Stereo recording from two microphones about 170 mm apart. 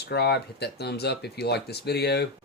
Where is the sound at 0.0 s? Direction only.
70° left (ahead or behind).